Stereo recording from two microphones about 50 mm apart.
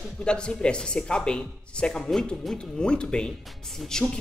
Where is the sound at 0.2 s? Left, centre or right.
Centre.